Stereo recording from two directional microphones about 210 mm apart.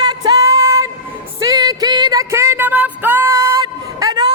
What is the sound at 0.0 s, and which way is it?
Music, 20° right (ahead or behind).